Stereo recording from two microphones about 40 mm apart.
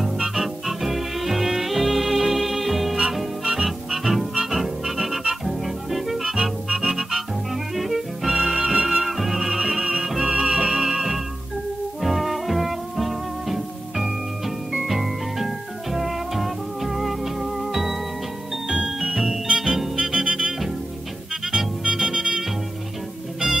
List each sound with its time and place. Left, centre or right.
0.0 s music: centre
10.1 s music: right
10.5 s music: centre